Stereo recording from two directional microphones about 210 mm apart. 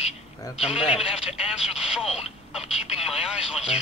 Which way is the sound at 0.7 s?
5° right (ahead or behind).